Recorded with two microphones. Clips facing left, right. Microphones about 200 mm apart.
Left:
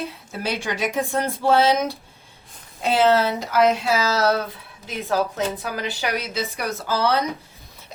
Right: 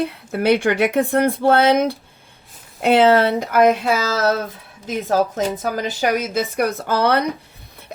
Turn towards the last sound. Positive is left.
turn(degrees=-55)  # may be behind; listen again after turning